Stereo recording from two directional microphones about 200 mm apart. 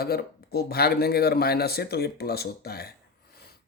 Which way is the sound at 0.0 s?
50° left (ahead or behind).